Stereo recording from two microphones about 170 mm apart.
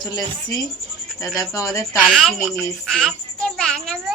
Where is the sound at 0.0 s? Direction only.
25° left (ahead or behind).